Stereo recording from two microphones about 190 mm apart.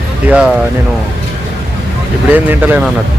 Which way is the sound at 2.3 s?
10° right (ahead or behind).